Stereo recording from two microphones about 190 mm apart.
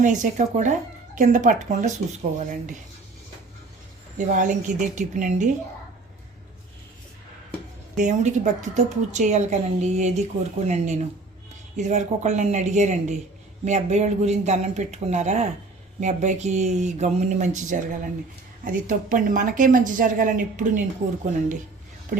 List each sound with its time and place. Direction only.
0.0 s a woman's voice: 40° right (ahead or behind)
4.2 s a woman's voice: 45° right (ahead or behind)
7.9 s a woman's voice: 40° right (ahead or behind)
22.1 s speech: 45° right (ahead or behind)